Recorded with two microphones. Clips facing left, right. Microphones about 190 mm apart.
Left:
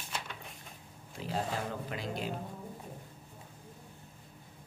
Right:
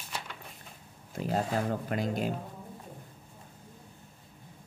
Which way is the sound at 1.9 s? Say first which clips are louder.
Right 6 dB; 45° right (ahead or behind).